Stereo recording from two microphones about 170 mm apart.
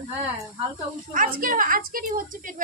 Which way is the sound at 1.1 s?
55° right (ahead or behind).